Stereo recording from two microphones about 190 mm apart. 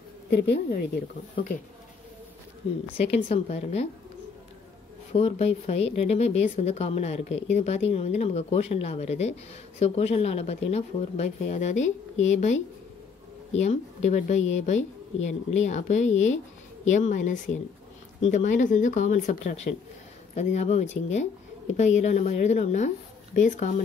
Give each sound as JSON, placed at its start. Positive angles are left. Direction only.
{"t": 0.3, "sound": "speech", "side_deg": 60}
{"t": 2.6, "sound": "speech", "side_deg": 30}
{"t": 5.1, "sound": "speech", "side_deg": 35}